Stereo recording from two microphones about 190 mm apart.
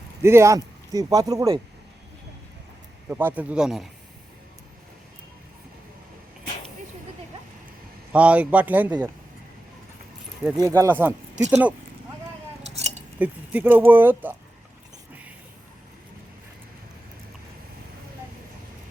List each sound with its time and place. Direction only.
0.2 s speech: 15° right (ahead or behind)
3.1 s speech: 10° right (ahead or behind)
8.1 s speech: 5° right (ahead or behind)
10.4 s speech: 15° right (ahead or behind)
12.7 s cutlery: 35° right (ahead or behind)
13.1 s speech: 10° right (ahead or behind)